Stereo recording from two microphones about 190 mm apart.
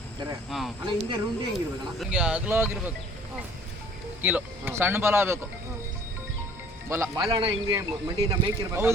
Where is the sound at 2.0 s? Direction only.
5° right (ahead or behind).